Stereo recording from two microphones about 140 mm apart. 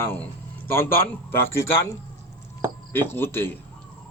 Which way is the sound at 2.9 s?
15° left (ahead or behind).